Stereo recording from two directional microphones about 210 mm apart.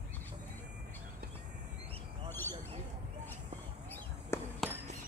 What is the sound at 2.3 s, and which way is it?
Squawk, 10° left (ahead or behind).